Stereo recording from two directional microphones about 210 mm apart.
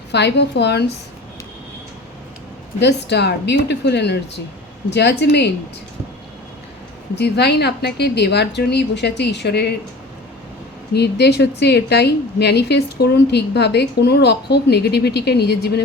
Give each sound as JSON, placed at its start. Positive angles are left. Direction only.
{"t": 0.1, "sound": "a woman's voice", "side_deg": 55}
{"t": 2.8, "sound": "a woman's voice", "side_deg": 55}
{"t": 7.2, "sound": "a woman's voice", "side_deg": 50}
{"t": 10.9, "sound": "a woman's voice", "side_deg": 50}